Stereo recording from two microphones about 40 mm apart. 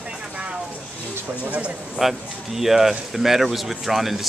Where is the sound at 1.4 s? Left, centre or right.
Right.